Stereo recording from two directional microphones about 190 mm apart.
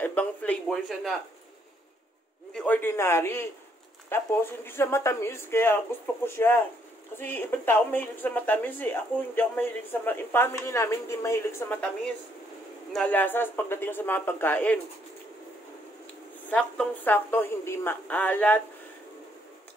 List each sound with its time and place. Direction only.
0.0 s a woman's voice: 10° left (ahead or behind)
2.5 s a woman's voice: 10° left (ahead or behind)
16.4 s a woman's voice: 10° left (ahead or behind)